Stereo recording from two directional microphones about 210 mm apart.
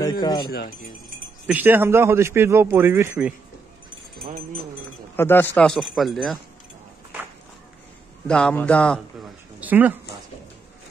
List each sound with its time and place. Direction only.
0.0 s speech: 20° left (ahead or behind)
1.5 s speech: 10° right (ahead or behind)
5.1 s a man's voice: 10° left (ahead or behind)
8.3 s a man's voice: 5° left (ahead or behind)
9.6 s speech: 10° right (ahead or behind)